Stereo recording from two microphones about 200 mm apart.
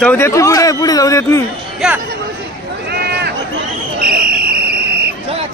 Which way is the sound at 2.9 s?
55° right (ahead or behind).